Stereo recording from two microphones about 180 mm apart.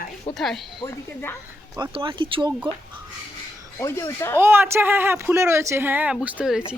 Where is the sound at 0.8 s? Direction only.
10° left (ahead or behind).